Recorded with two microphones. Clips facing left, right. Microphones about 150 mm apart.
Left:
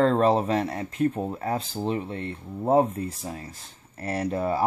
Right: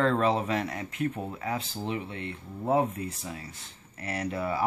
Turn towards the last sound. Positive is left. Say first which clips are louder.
# left 5 dB
turn(degrees=40)  # may be behind; listen again after turning